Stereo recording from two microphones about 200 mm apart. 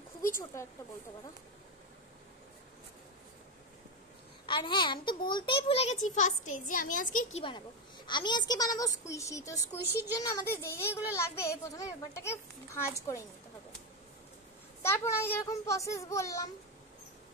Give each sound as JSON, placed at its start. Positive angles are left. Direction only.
{"t": 0.2, "sound": "a woman's voice", "side_deg": 15}
{"t": 4.5, "sound": "a child's voice", "side_deg": 25}
{"t": 8.1, "sound": "a child's voice", "side_deg": 20}
{"t": 14.8, "sound": "a child's voice", "side_deg": 10}